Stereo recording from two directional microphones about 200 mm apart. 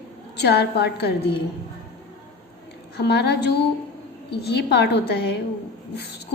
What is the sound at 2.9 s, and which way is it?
A woman's voice, 55° left (ahead or behind).